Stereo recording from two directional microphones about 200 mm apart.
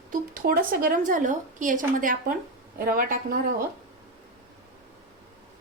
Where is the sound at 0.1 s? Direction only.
45° right (ahead or behind).